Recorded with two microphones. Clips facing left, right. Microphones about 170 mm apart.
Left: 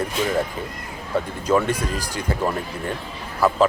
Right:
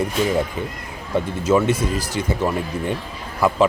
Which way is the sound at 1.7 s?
15° left (ahead or behind).